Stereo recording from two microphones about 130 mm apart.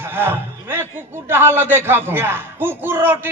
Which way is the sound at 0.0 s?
15° right (ahead or behind).